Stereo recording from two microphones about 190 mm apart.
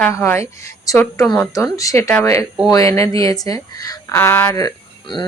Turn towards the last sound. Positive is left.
turn(degrees=20)  # may be behind; listen again after turning